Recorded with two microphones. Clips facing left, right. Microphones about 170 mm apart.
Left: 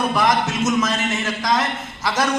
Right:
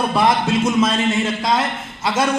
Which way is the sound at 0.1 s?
30° right (ahead or behind).